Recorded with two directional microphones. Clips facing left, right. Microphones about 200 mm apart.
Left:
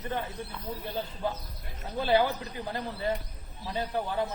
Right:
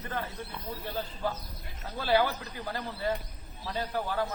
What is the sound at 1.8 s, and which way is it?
A man's voice, 20° left (ahead or behind).